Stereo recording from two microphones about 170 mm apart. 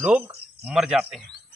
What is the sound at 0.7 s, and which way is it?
Speech, 5° right (ahead or behind).